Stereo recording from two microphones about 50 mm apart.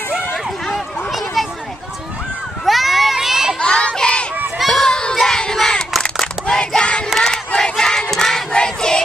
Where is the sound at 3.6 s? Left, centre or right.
Centre.